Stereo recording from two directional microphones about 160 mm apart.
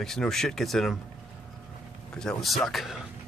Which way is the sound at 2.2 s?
Centre (ahead or behind).